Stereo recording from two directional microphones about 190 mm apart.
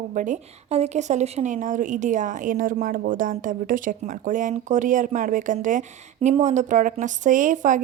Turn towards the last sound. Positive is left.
turn(degrees=-40)  # may be behind; listen again after turning